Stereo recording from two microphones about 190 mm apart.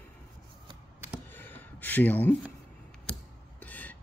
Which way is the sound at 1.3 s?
10° left (ahead or behind).